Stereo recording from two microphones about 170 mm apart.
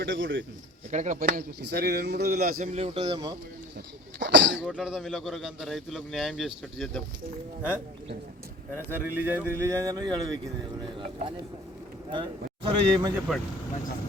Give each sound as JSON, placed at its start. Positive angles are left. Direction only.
{"t": 0.0, "sound": "speech", "side_deg": -90}
{"t": 0.9, "sound": "speech", "side_deg": -45}
{"t": 1.6, "sound": "speech", "side_deg": -70}
{"t": 2.7, "sound": "speech", "side_deg": -30}
{"t": 4.2, "sound": "speech", "side_deg": -90}
{"t": 4.7, "sound": "a man's voice", "side_deg": 0}
{"t": 9.1, "sound": "speech", "side_deg": -10}
{"t": 11.0, "sound": "speech", "side_deg": -35}
{"t": 13.1, "sound": "a man's voice", "side_deg": -5}